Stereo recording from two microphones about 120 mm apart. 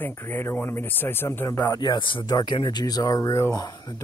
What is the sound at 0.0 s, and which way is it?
Speech, 20° left (ahead or behind).